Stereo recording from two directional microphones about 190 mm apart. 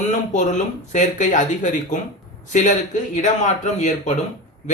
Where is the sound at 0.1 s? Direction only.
40° left (ahead or behind).